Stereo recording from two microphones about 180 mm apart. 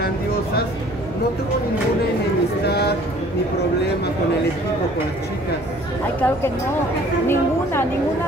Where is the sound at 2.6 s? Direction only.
65° left (ahead or behind).